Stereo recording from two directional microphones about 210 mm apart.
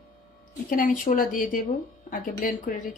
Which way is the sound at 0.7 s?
40° left (ahead or behind).